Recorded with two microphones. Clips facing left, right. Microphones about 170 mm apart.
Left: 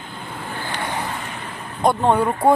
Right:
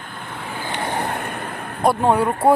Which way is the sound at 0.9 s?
60° right (ahead or behind).